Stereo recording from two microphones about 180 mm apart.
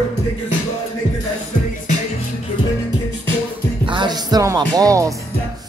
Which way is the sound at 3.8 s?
25° right (ahead or behind).